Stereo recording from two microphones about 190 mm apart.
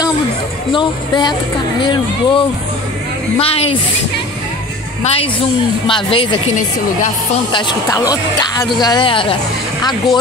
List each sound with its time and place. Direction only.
0.7 s a woman's voice: 25° left (ahead or behind)
5.0 s a woman's voice: 30° left (ahead or behind)
7.5 s speech: 20° left (ahead or behind)